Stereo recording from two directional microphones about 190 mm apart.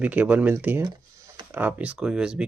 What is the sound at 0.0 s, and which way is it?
Speech, 10° right (ahead or behind).